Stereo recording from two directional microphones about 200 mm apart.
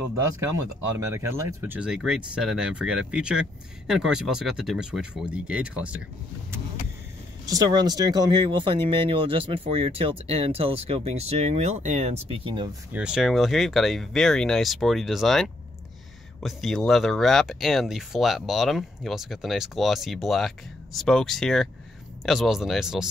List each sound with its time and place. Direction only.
0.9 s speech: 15° right (ahead or behind)
7.4 s speech: 20° right (ahead or behind)
12.9 s speech: 5° right (ahead or behind)